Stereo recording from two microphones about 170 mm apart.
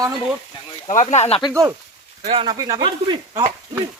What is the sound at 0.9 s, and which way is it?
Speech, 40° left (ahead or behind).